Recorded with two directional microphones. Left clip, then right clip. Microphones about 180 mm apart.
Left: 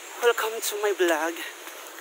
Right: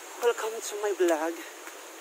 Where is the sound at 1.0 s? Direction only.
Centre (ahead or behind).